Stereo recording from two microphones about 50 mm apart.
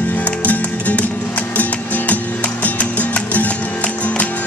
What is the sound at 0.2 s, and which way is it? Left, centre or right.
Music, left.